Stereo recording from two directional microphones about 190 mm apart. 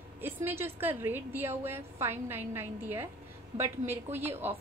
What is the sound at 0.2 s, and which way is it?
A woman's voice, 10° right (ahead or behind).